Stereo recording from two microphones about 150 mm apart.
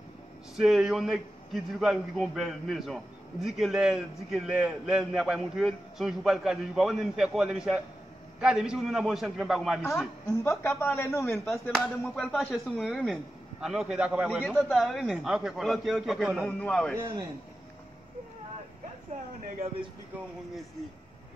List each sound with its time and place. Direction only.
0.6 s a man's voice: centre (ahead or behind)
10.3 s a woman's voice: 20° left (ahead or behind)
11.7 s a man's voice: 5° left (ahead or behind)
16.4 s a woman's voice: 10° left (ahead or behind)